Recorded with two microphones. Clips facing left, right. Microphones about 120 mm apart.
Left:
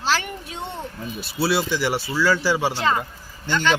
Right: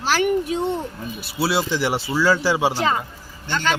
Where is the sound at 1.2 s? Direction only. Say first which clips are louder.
Even; 10° right (ahead or behind).